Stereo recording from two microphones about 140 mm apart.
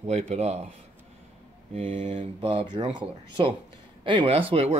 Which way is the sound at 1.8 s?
50° right (ahead or behind).